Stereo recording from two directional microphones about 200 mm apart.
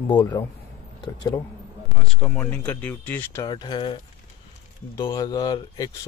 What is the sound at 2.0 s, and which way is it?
Speech, centre (ahead or behind).